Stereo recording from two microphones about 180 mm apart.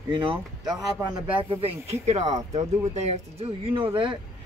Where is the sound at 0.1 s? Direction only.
30° right (ahead or behind).